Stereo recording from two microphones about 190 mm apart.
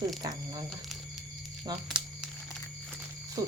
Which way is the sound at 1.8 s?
5° right (ahead or behind).